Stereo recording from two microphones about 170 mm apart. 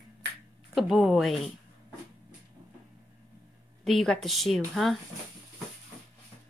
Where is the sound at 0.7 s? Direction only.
Centre (ahead or behind).